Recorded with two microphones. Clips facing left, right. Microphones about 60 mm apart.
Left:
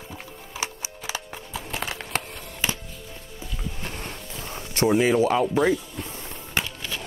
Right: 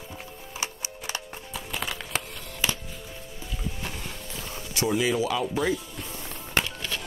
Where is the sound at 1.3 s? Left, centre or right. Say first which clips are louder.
Left 2 dB; left.